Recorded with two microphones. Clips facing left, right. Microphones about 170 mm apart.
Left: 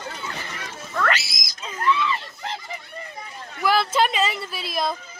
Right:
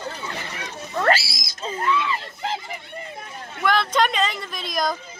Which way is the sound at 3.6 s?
5° left (ahead or behind).